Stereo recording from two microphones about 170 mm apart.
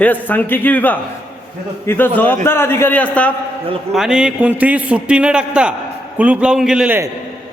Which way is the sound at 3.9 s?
5° right (ahead or behind).